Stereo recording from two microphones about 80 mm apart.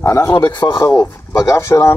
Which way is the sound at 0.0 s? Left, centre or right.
Left.